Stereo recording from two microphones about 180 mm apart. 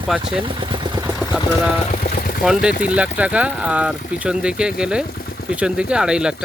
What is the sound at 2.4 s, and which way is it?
Speech, 5° right (ahead or behind).